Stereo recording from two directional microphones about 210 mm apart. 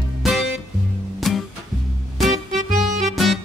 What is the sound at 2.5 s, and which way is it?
Music, 35° right (ahead or behind).